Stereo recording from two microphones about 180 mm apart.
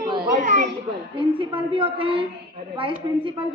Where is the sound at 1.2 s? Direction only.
30° right (ahead or behind).